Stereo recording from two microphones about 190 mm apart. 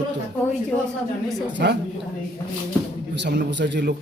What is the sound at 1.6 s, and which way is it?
Speech, 60° right (ahead or behind).